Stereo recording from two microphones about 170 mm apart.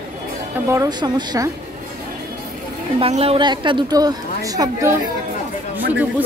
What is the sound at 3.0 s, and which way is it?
A woman's voice, 35° right (ahead or behind).